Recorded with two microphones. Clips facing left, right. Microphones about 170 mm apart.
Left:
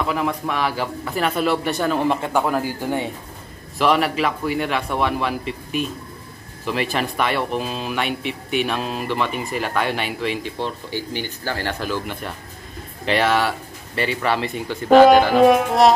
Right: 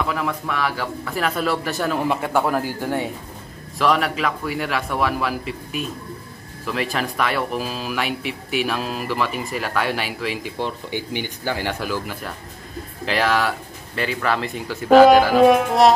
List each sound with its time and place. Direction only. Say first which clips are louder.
0.1 s speech: left 2 dB; 15° left (ahead or behind)
1.1 s speech: left 2 dB; centre (ahead or behind)
10.6 s speech: even; 15° right (ahead or behind); by 15.9 s centre (ahead or behind)